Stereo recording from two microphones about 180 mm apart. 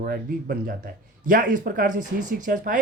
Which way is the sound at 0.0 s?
55° right (ahead or behind).